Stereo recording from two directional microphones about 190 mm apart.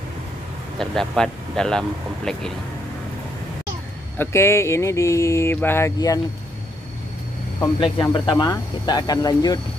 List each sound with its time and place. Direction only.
0.7 s speech: 5° left (ahead or behind)
4.2 s mantra: 15° left (ahead or behind)
7.6 s speech: 20° left (ahead or behind)